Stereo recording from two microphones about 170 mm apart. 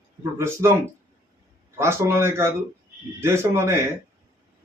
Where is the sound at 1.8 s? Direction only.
15° right (ahead or behind).